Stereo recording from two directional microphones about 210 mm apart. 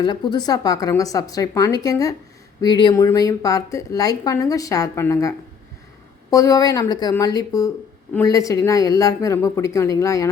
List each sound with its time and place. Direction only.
0.0 s a woman's voice: 20° left (ahead or behind)
6.3 s a woman's voice: 15° left (ahead or behind)